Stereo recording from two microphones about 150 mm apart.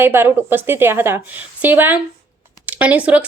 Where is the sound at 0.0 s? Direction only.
15° right (ahead or behind).